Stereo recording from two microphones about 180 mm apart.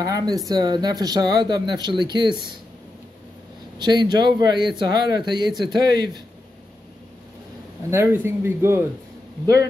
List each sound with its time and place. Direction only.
0.0 s speech: 20° right (ahead or behind)
3.7 s speech: 25° right (ahead or behind)
7.9 s a man's voice: 10° right (ahead or behind)